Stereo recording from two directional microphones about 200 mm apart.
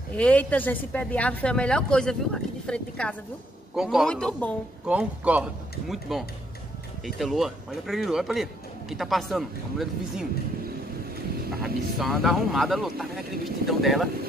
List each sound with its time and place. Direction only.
0.1 s speech: 5° left (ahead or behind)
4.8 s speech: 5° right (ahead or behind)
11.6 s speech: centre (ahead or behind)